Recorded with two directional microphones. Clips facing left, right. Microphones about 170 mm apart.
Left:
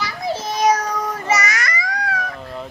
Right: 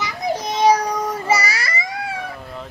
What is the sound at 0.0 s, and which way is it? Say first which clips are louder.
Child singing: right 1 dB; 15° right (ahead or behind).